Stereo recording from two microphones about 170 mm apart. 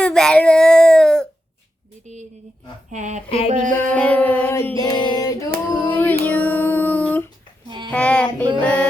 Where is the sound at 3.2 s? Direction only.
35° left (ahead or behind).